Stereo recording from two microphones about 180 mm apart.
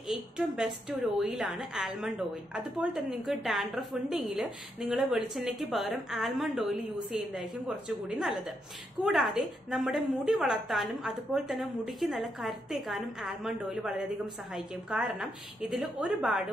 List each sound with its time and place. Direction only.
0.1 s speech: centre (ahead or behind)